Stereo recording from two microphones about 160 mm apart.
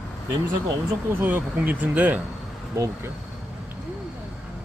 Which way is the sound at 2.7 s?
20° right (ahead or behind).